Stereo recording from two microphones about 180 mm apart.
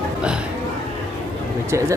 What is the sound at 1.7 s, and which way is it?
Speech, 15° right (ahead or behind).